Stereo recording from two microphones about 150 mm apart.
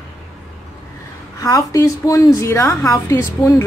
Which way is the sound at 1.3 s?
25° left (ahead or behind).